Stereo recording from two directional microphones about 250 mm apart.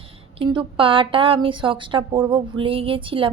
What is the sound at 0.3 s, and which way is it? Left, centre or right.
A woman's voice, centre.